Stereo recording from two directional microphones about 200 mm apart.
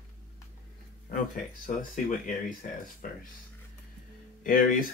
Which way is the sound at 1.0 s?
40° left (ahead or behind).